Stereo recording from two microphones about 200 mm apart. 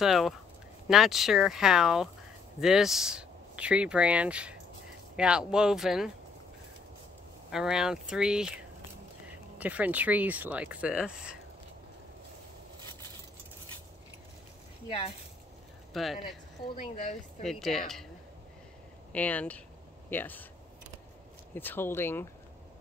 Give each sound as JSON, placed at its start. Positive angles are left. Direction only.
{"t": 0.0, "sound": "speech", "side_deg": 0}
{"t": 7.5, "sound": "speech", "side_deg": -5}
{"t": 9.6, "sound": "speech", "side_deg": -5}
{"t": 14.9, "sound": "speech", "side_deg": 30}
{"t": 15.9, "sound": "speech", "side_deg": 0}
{"t": 16.7, "sound": "speech", "side_deg": 40}
{"t": 17.4, "sound": "speech", "side_deg": 0}
{"t": 19.1, "sound": "speech", "side_deg": 5}
{"t": 21.5, "sound": "speech", "side_deg": 10}